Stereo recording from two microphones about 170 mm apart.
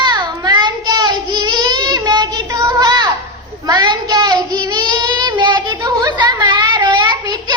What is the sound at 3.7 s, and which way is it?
Child singing, 25° right (ahead or behind).